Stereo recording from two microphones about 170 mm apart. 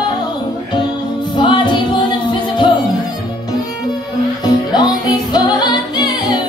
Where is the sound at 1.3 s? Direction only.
30° left (ahead or behind).